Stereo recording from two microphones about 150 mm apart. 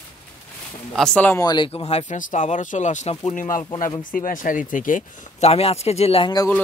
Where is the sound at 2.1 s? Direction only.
55° left (ahead or behind).